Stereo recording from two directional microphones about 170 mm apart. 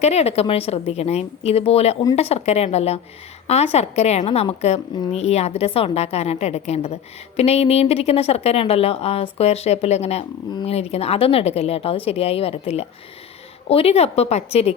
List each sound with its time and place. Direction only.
0.0 s a woman's voice: 40° left (ahead or behind)